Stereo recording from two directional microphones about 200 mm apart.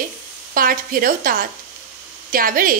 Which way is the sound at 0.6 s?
45° right (ahead or behind).